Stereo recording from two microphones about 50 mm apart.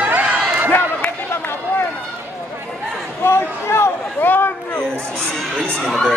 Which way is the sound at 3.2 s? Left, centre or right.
Left.